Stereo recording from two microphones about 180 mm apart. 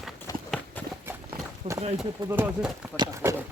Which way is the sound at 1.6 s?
40° right (ahead or behind).